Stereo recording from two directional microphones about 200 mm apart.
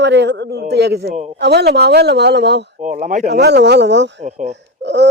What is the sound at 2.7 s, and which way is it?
Speech, 40° right (ahead or behind).